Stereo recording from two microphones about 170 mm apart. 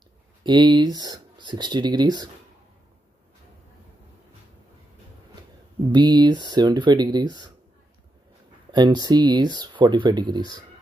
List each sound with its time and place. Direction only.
0.4 s speech: 25° right (ahead or behind)
5.9 s speech: 25° right (ahead or behind)
8.7 s speech: 25° right (ahead or behind)